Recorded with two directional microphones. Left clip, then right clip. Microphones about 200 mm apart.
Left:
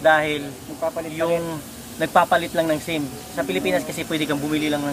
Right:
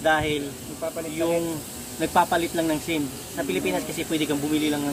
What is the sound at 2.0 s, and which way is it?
Speech, 20° left (ahead or behind).